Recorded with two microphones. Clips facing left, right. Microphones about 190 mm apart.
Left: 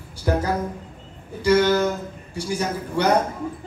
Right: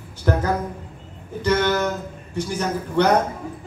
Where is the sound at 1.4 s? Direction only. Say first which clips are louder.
Left 3 dB; 10° left (ahead or behind).